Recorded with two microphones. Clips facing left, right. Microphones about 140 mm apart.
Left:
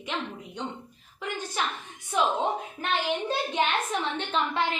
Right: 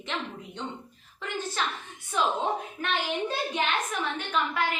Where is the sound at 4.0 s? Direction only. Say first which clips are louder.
Left 1 dB; 25° left (ahead or behind).